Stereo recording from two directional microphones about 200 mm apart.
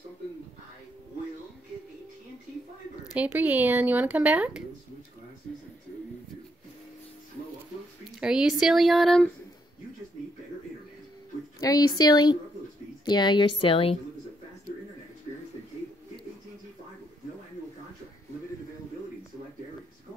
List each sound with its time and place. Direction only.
3.1 s speech: 5° right (ahead or behind)
8.0 s speech: 5° right (ahead or behind)
11.6 s a woman's voice: 20° left (ahead or behind)